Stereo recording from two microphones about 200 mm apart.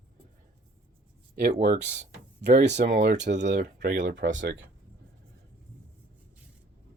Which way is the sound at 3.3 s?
35° right (ahead or behind).